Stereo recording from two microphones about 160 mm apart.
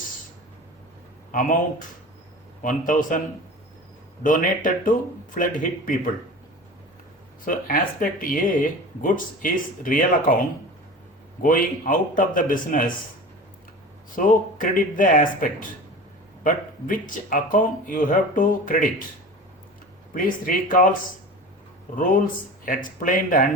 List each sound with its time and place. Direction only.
1.3 s speech: 55° left (ahead or behind)
2.6 s speech: 55° left (ahead or behind)
4.2 s speech: 55° left (ahead or behind)
7.4 s speech: 60° left (ahead or behind)
11.4 s speech: 55° left (ahead or behind)
14.2 s speech: 55° left (ahead or behind)
20.1 s speech: 55° left (ahead or behind)
22.6 s speech: 55° left (ahead or behind)